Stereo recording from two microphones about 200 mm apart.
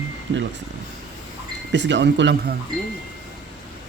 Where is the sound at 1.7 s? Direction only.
60° right (ahead or behind).